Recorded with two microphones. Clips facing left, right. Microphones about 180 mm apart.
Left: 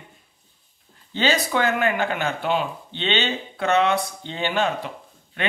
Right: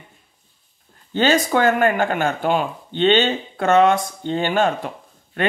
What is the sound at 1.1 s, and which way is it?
Speech, 50° right (ahead or behind).